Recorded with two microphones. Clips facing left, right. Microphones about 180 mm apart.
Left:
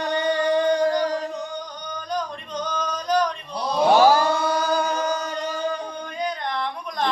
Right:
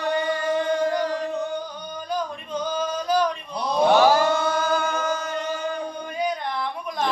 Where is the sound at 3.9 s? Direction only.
40° left (ahead or behind).